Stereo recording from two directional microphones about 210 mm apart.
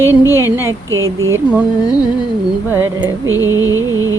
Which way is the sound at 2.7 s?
10° right (ahead or behind).